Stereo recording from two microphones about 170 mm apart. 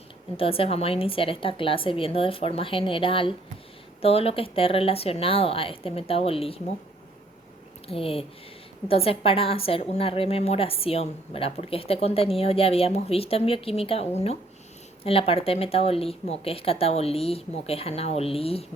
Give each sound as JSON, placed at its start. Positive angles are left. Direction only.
{"t": 0.3, "sound": "a woman's voice", "side_deg": 35}
{"t": 7.9, "sound": "a woman's voice", "side_deg": 35}